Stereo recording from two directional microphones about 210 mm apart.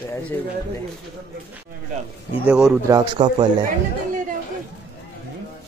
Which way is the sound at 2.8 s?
20° right (ahead or behind).